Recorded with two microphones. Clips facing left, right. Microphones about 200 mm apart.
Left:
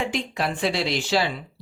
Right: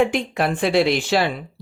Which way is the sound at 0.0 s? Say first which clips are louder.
Right 7 dB; 55° right (ahead or behind).